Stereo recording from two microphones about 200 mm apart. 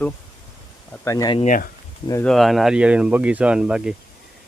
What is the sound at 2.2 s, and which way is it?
Speech, centre (ahead or behind).